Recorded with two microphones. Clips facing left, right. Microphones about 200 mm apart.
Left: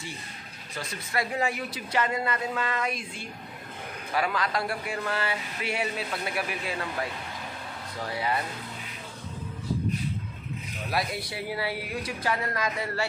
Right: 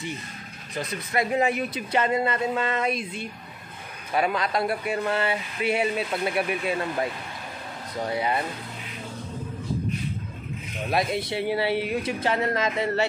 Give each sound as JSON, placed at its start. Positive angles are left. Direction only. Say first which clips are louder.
{"t": 0.7, "sound": "speech", "louder": "right 5 dB", "side_deg": -20}
{"t": 10.9, "sound": "speech", "louder": "right 6 dB", "side_deg": -20}